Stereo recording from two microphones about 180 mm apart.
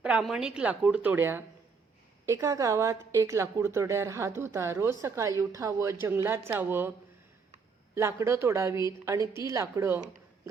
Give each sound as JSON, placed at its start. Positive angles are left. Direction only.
{"t": 0.0, "sound": "speech", "side_deg": -5}
{"t": 7.9, "sound": "speech", "side_deg": -15}